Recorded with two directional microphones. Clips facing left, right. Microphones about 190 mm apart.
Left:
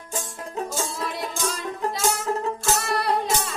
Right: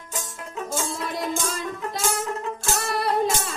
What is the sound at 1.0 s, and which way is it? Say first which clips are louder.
Music: right 1 dB; centre (ahead or behind).